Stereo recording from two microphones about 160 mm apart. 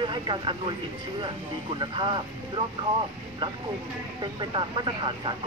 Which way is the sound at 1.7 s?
30° right (ahead or behind).